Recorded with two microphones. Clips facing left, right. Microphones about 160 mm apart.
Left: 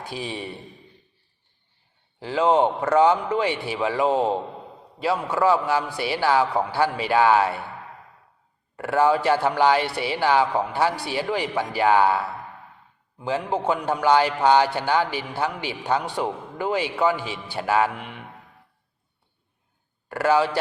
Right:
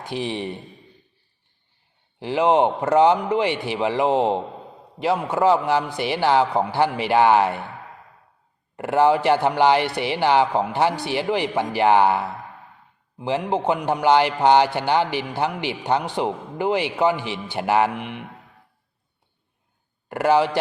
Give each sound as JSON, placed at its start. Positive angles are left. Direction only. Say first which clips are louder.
{"t": 0.0, "sound": "a man's voice", "louder": "right 5 dB", "side_deg": -25}
{"t": 2.1, "sound": "a man's voice", "louder": "right 2 dB", "side_deg": -15}
{"t": 8.7, "sound": "a man's voice", "louder": "right 2 dB", "side_deg": -20}
{"t": 20.1, "sound": "a man's voice", "louder": "right 2 dB", "side_deg": -20}